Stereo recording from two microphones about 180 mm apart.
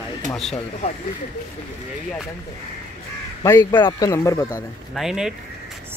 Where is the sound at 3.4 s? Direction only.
15° left (ahead or behind).